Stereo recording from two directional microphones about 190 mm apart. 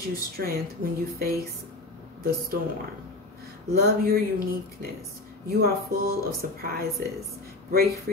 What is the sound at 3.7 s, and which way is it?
Speech, 55° right (ahead or behind).